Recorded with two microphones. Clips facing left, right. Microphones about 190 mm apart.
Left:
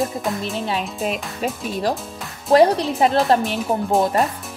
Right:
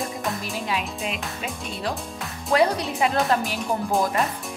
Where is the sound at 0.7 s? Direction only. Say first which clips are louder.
Left 3 dB; 35° left (ahead or behind).